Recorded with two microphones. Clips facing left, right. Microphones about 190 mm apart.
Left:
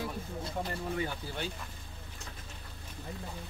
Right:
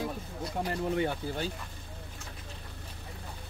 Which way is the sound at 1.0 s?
40° right (ahead or behind).